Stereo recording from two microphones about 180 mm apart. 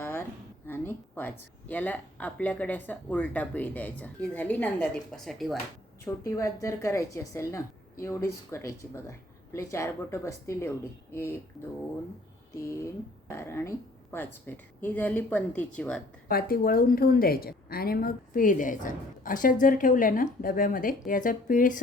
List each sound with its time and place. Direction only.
0.0 s a sound: 10° left (ahead or behind)
0.7 s a woman's voice: 10° left (ahead or behind)
6.1 s a woman's voice: 15° left (ahead or behind)
12.8 s a woman's voice: 15° left (ahead or behind)
16.3 s a woman's voice: 55° left (ahead or behind)